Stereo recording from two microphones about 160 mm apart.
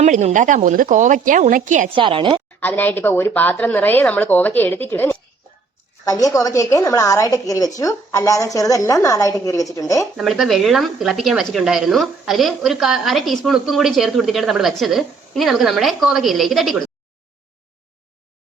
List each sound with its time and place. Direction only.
0.0 s a woman's voice: 45° right (ahead or behind)
2.0 s a woman's voice: 30° right (ahead or behind)
2.6 s a woman's voice: 10° left (ahead or behind)
10.2 s speech: centre (ahead or behind)